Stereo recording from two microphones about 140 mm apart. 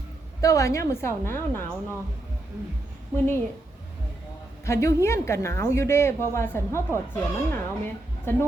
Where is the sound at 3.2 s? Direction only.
15° left (ahead or behind).